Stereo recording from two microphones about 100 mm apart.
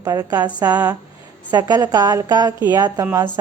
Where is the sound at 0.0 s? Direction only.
35° right (ahead or behind).